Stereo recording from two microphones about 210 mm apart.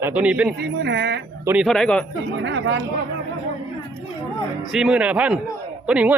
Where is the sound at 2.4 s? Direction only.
60° right (ahead or behind).